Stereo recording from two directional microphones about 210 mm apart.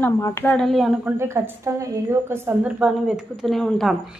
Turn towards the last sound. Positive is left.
turn(degrees=0)  # may be behind; listen again after turning